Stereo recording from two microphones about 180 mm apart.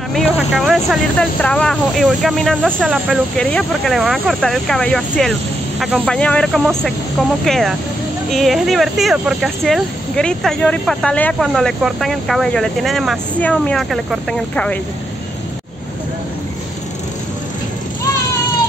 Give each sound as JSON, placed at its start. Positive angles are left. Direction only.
{"t": 0.1, "sound": "speech", "side_deg": 0}